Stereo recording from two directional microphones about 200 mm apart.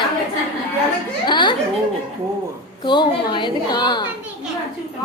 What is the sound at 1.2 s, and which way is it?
Speech, 25° left (ahead or behind).